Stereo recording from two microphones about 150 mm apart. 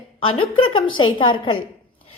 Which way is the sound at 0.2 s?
35° left (ahead or behind).